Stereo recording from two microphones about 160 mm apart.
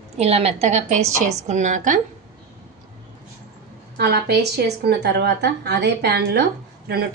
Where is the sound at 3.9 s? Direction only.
90° right.